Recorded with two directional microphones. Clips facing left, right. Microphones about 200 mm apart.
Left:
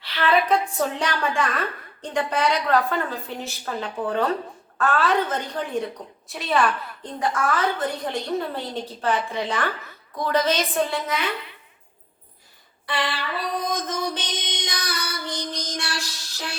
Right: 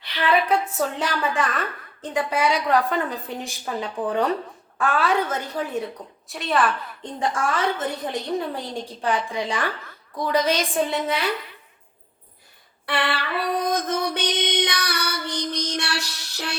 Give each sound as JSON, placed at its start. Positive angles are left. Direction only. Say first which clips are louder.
{"t": 0.0, "sound": "a woman's voice", "louder": "even", "side_deg": -15}
{"t": 7.2, "sound": "a woman's voice", "louder": "even", "side_deg": -25}
{"t": 8.4, "sound": "a woman's voice", "louder": "even", "side_deg": -15}
{"t": 10.9, "sound": "a woman's voice", "louder": "right 2 dB", "side_deg": -30}
{"t": 12.8, "sound": "music", "louder": "right 2 dB", "side_deg": -60}